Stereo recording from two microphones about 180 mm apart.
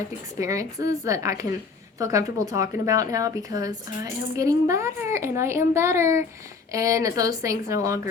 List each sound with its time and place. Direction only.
0.3 s a woman's voice: 20° right (ahead or behind)